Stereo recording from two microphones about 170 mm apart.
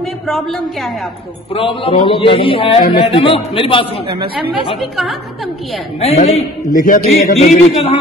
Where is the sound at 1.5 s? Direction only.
30° left (ahead or behind).